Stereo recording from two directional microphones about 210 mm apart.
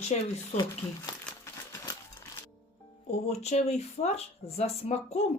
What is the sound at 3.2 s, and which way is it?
Speech, 30° left (ahead or behind).